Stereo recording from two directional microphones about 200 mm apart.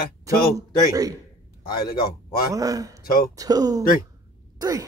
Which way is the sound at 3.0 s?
45° left (ahead or behind).